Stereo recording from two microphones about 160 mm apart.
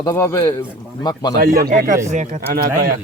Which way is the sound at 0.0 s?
20° left (ahead or behind).